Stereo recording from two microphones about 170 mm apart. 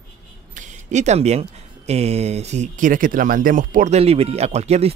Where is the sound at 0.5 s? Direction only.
45° right (ahead or behind).